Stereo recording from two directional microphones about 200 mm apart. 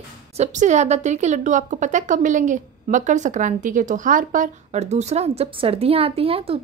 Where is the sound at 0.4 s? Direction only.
35° right (ahead or behind).